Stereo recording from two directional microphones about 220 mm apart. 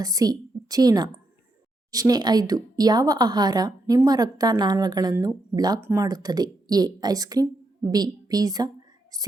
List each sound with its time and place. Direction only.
0.0 s a woman's voice: 15° right (ahead or behind)